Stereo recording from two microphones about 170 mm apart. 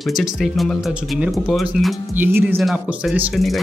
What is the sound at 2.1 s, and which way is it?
Speech, 10° right (ahead or behind).